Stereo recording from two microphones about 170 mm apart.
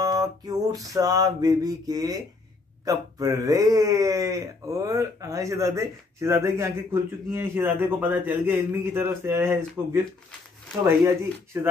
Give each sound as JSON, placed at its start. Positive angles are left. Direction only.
{"t": 0.0, "sound": "music", "side_deg": -20}
{"t": 2.8, "sound": "speech", "side_deg": -20}
{"t": 10.8, "sound": "speech", "side_deg": -15}